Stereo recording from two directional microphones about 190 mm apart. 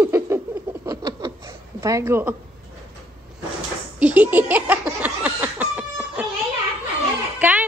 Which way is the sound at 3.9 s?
10° right (ahead or behind).